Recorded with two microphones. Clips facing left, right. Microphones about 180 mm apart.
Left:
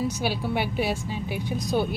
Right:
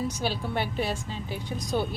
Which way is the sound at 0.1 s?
10° left (ahead or behind).